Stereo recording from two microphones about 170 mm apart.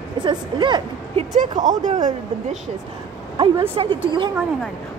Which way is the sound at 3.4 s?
30° right (ahead or behind).